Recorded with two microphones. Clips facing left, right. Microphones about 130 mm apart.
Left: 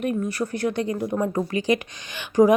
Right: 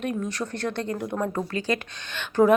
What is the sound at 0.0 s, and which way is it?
Speech, 5° left (ahead or behind).